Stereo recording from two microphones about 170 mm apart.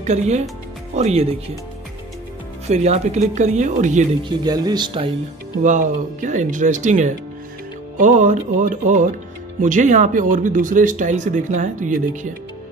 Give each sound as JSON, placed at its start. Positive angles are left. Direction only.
{"t": 0.0, "sound": "speech", "side_deg": -40}
{"t": 2.7, "sound": "speech", "side_deg": -40}
{"t": 4.2, "sound": "speech", "side_deg": -25}
{"t": 5.6, "sound": "speech", "side_deg": -45}